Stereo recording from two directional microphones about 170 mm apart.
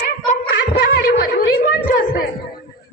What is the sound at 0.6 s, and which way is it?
Snicker, 65° left (ahead or behind).